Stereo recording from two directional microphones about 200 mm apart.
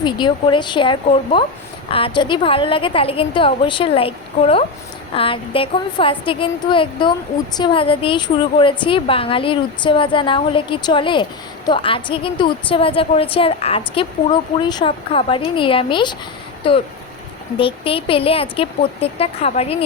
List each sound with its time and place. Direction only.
0.0 s a woman's voice: 25° left (ahead or behind)